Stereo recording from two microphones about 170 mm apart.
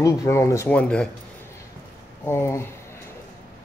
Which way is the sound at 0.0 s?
15° left (ahead or behind).